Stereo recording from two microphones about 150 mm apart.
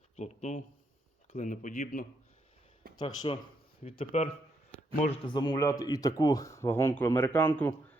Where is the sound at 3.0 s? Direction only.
30° left (ahead or behind).